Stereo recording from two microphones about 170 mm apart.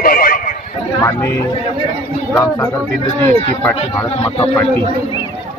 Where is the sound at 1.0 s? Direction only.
15° left (ahead or behind).